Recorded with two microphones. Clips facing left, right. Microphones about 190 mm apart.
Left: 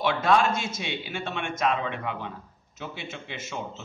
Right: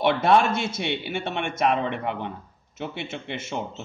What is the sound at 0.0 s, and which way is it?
Speech, 65° right (ahead or behind).